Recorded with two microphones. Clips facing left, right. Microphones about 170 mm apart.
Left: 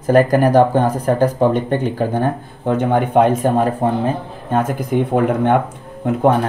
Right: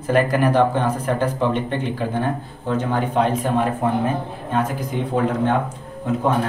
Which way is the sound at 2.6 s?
55° left (ahead or behind).